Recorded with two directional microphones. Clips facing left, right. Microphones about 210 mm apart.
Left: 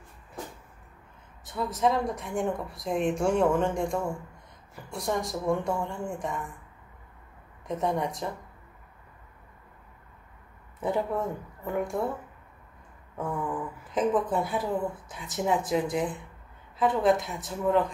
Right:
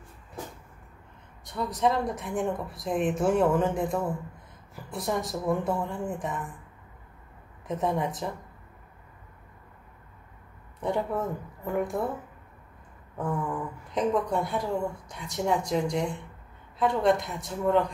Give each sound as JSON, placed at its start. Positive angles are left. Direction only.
{"t": 1.4, "sound": "speech", "side_deg": 0}
{"t": 7.6, "sound": "speech", "side_deg": 0}
{"t": 10.8, "sound": "speech", "side_deg": 0}
{"t": 13.2, "sound": "speech", "side_deg": 0}